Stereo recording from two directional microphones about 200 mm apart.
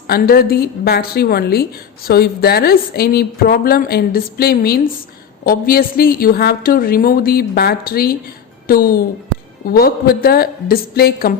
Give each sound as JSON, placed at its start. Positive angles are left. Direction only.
{"t": 0.1, "sound": "a woman's voice", "side_deg": 50}